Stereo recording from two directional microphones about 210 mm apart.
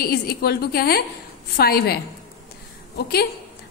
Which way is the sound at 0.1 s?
50° left (ahead or behind).